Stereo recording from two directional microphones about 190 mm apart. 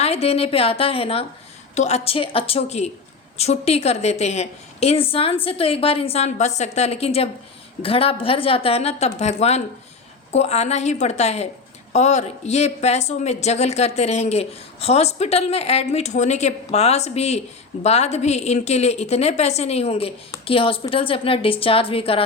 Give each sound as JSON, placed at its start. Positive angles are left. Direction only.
{"t": 0.0, "sound": "a woman's voice", "side_deg": 35}